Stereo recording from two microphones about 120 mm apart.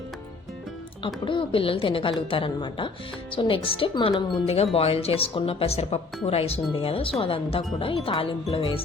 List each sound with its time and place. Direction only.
1.0 s speech: 45° left (ahead or behind)